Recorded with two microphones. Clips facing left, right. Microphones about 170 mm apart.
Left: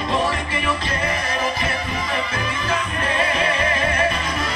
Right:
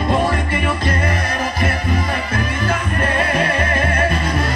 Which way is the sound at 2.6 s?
55° right (ahead or behind).